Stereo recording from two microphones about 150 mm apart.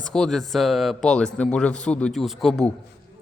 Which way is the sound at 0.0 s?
5° left (ahead or behind).